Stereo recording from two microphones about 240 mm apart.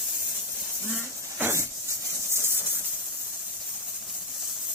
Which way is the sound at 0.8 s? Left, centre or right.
Centre.